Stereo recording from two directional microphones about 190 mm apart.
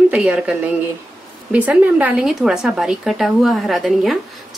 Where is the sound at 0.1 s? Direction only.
5° right (ahead or behind).